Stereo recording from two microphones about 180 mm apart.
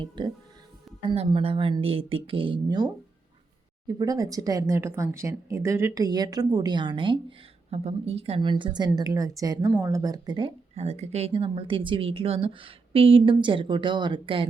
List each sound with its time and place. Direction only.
0.2 s speech: 25° right (ahead or behind)
10.8 s speech: 35° right (ahead or behind)